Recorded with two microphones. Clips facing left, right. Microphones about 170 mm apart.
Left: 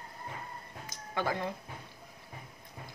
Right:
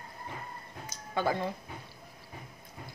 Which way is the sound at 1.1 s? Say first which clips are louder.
Right 3 dB; 25° right (ahead or behind).